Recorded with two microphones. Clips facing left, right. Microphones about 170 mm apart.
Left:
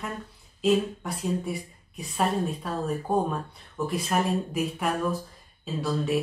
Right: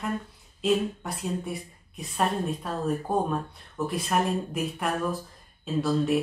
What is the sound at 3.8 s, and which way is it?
A woman's voice, centre (ahead or behind).